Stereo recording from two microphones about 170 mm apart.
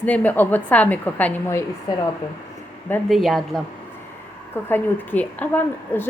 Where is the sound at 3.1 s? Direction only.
Centre (ahead or behind).